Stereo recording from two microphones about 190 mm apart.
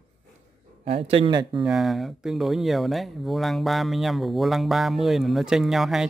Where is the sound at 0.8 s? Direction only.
30° right (ahead or behind).